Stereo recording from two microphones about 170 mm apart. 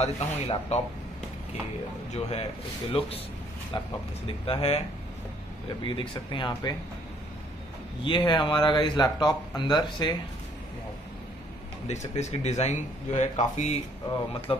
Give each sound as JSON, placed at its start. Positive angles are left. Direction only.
{"t": 0.0, "sound": "speech", "side_deg": 40}
{"t": 2.1, "sound": "speech", "side_deg": 35}
{"t": 5.9, "sound": "speech", "side_deg": 30}
{"t": 8.0, "sound": "speech", "side_deg": 30}
{"t": 11.9, "sound": "speech", "side_deg": 40}
{"t": 14.5, "sound": "speech", "side_deg": 35}